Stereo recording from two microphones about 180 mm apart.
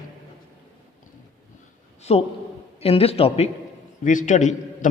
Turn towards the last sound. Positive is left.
turn(degrees=45)  # may be behind; listen again after turning